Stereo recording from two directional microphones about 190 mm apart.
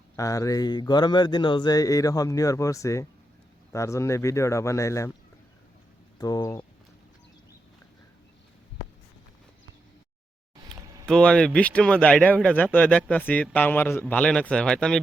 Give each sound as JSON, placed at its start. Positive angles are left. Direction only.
{"t": 0.2, "sound": "speech", "side_deg": 15}
{"t": 6.1, "sound": "speech", "side_deg": 20}
{"t": 11.0, "sound": "speech", "side_deg": 5}